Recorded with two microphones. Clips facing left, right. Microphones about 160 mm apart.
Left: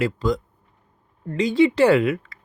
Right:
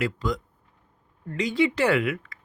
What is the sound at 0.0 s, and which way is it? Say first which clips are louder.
Speech: left 5 dB; 30° left (ahead or behind).